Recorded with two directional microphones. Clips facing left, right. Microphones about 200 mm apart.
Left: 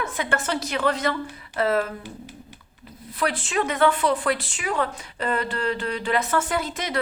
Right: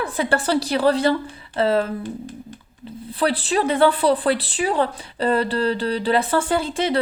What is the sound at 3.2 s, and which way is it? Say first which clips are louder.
Speech: right 4 dB; 35° right (ahead or behind).